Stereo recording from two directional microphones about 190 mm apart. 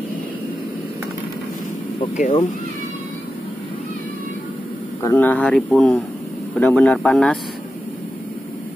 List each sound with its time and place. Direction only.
2.1 s speech: 40° left (ahead or behind)
5.0 s speech: 10° left (ahead or behind)